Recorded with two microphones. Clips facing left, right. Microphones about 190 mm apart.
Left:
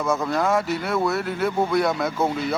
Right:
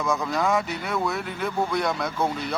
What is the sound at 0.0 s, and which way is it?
A man's voice, 5° left (ahead or behind).